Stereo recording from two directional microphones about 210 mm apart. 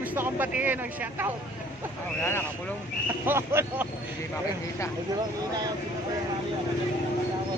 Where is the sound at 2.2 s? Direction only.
10° left (ahead or behind).